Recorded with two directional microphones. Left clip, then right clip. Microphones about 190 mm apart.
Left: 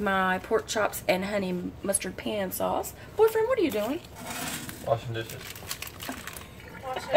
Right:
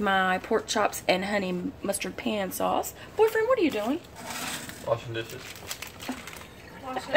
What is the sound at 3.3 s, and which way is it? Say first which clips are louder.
Speech: right 1 dB; 20° right (ahead or behind).